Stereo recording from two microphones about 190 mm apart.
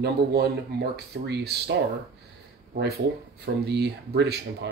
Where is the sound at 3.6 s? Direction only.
60° right (ahead or behind).